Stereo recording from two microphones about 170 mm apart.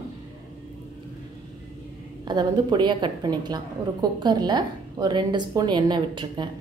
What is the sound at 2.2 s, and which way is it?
A woman's voice, 25° right (ahead or behind).